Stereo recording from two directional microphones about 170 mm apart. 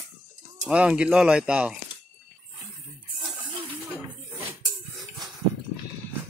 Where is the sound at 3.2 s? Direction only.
Centre (ahead or behind).